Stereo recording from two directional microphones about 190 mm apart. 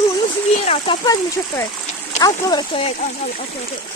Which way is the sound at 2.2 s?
20° left (ahead or behind).